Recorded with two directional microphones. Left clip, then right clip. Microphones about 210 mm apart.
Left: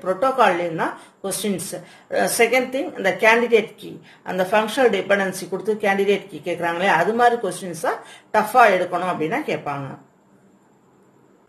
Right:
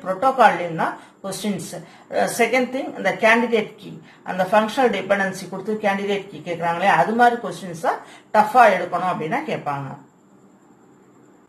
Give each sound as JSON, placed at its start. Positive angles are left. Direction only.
{"t": 0.0, "sound": "a woman's voice", "side_deg": 55}